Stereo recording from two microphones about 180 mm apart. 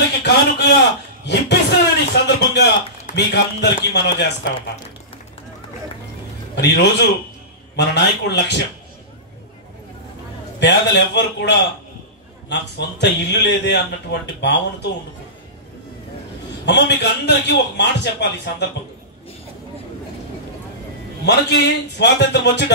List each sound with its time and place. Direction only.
0.2 s a sound: 75° left (ahead or behind)
3.2 s a man's voice: 70° left (ahead or behind)
6.5 s a man's voice: 70° left (ahead or behind)
10.6 s a man's voice: 75° left (ahead or behind)
16.6 s a man's voice: 70° left (ahead or behind)
21.3 s a man's voice: 70° left (ahead or behind)